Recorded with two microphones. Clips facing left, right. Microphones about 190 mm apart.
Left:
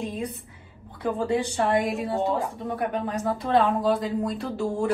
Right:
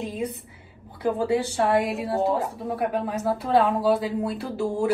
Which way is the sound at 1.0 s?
5° right (ahead or behind).